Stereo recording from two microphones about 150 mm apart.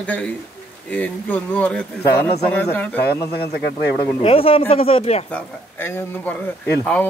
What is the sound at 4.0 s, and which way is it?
Speech, 40° left (ahead or behind).